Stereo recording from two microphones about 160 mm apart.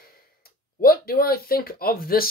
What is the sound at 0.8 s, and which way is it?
Speech, 70° left (ahead or behind).